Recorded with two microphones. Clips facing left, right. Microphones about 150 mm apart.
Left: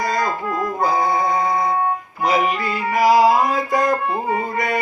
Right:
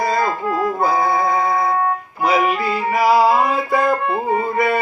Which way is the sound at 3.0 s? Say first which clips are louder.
Left 1 dB; 40° left (ahead or behind).